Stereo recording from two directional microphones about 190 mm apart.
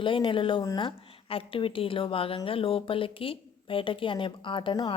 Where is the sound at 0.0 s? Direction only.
25° left (ahead or behind).